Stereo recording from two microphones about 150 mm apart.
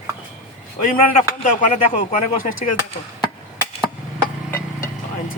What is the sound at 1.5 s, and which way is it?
Speech, 60° left (ahead or behind).